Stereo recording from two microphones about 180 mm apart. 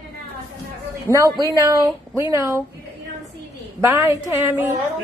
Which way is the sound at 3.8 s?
15° right (ahead or behind).